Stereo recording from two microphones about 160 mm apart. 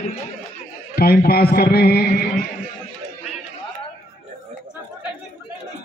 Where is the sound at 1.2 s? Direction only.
75° left (ahead or behind).